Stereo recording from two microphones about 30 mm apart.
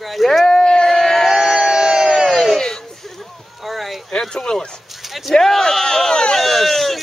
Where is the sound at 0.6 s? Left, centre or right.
Left.